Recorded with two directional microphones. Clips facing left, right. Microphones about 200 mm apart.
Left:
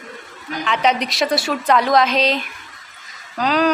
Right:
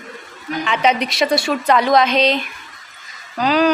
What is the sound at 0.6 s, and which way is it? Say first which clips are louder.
A woman's voice: right 1 dB; centre (ahead or behind).